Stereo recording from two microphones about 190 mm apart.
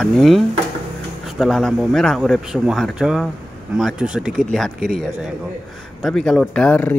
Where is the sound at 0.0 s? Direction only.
Centre (ahead or behind).